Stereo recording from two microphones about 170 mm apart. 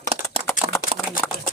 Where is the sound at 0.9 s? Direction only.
55° left (ahead or behind).